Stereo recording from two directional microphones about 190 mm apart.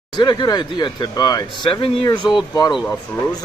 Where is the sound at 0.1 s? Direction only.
25° left (ahead or behind).